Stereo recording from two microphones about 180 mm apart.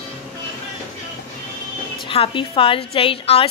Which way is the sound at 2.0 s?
30° left (ahead or behind).